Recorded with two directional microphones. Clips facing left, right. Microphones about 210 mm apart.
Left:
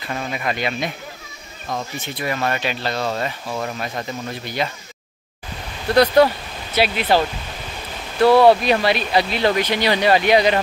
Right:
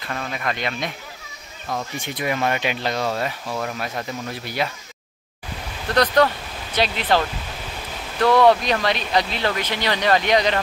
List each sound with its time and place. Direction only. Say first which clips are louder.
0.0 s speech: left 2 dB; 5° left (ahead or behind)
2.0 s speech: right 2 dB; 15° right (ahead or behind)
5.9 s speech: left 4 dB; 10° left (ahead or behind)